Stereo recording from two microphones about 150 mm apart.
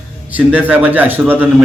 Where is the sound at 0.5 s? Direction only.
10° right (ahead or behind).